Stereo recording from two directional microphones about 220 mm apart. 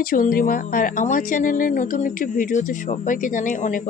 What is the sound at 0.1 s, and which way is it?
Speech, 40° left (ahead or behind).